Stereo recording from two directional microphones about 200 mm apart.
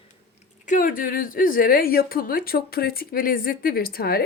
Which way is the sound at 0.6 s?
40° left (ahead or behind).